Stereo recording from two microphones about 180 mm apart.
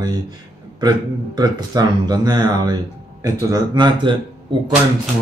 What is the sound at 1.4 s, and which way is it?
Speech, 20° right (ahead or behind).